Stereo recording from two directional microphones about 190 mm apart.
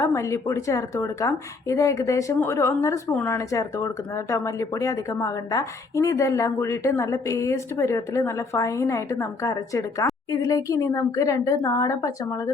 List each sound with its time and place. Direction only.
0.0 s speech: 15° left (ahead or behind)